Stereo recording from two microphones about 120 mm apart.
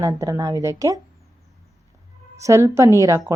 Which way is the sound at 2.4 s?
25° right (ahead or behind).